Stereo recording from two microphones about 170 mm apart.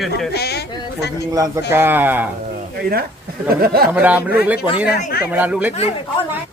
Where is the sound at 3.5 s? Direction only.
65° right (ahead or behind).